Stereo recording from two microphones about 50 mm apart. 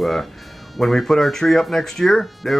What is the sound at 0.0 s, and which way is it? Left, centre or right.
Speech, centre.